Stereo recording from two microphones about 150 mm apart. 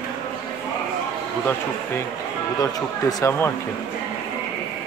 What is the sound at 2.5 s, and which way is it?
Speech, 25° left (ahead or behind).